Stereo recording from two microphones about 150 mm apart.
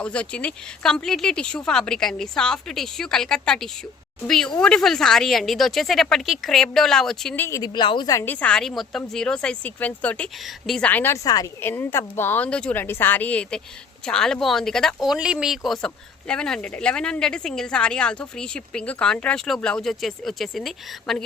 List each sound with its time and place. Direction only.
0.0 s a woman's voice: 5° left (ahead or behind)
7.4 s speech: 20° left (ahead or behind)
7.8 s a woman's voice: 30° left (ahead or behind); by 21.2 s centre (ahead or behind)